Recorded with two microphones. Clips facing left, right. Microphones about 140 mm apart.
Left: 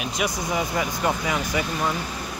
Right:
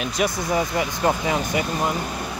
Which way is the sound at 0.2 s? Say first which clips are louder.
Right 4 dB; centre (ahead or behind).